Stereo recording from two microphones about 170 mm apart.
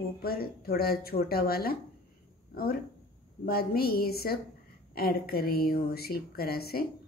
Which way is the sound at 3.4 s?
65° left (ahead or behind).